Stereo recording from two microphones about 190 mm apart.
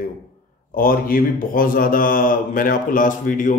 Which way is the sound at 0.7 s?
50° left (ahead or behind).